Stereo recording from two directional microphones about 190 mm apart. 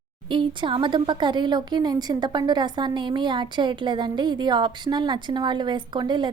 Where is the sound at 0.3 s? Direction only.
25° right (ahead or behind).